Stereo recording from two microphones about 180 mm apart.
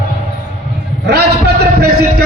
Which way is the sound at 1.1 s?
65° right (ahead or behind).